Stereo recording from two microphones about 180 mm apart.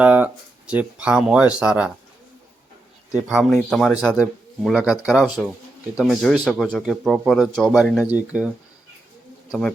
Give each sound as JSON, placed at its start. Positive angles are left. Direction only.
{"t": 0.0, "sound": "speech", "side_deg": -10}
{"t": 3.2, "sound": "speech", "side_deg": -5}
{"t": 9.5, "sound": "speech", "side_deg": 5}